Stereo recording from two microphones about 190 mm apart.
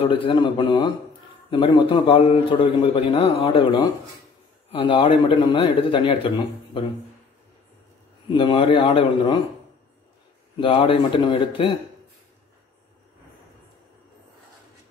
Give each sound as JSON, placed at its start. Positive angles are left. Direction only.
{"t": 0.0, "sound": "a man's voice", "side_deg": 25}
{"t": 8.3, "sound": "a man's voice", "side_deg": 25}
{"t": 10.6, "sound": "a man's voice", "side_deg": 30}